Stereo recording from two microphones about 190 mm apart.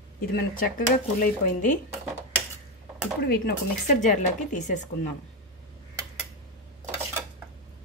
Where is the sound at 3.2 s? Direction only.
60° left (ahead or behind).